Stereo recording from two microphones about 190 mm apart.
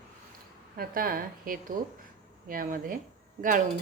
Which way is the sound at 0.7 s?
50° right (ahead or behind).